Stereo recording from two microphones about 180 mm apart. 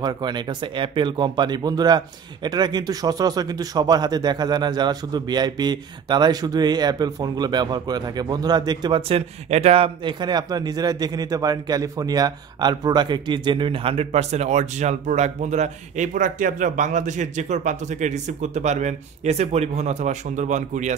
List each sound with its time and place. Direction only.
0.0 s speech: 25° right (ahead or behind); by 20.9 s 40° right (ahead or behind)